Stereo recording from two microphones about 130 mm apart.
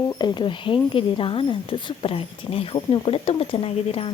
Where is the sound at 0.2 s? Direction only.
40° left (ahead or behind).